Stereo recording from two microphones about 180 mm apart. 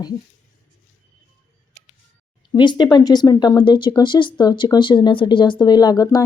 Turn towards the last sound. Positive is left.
turn(degrees=20)  # may be behind; listen again after turning